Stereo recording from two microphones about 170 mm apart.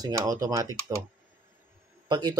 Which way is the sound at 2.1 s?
25° right (ahead or behind).